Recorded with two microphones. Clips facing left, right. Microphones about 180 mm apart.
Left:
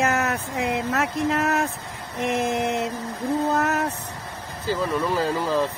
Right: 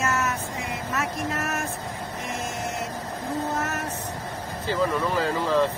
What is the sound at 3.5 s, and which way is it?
Speech, 70° left (ahead or behind).